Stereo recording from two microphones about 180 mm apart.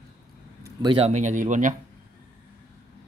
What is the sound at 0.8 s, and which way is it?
Speech, 35° right (ahead or behind).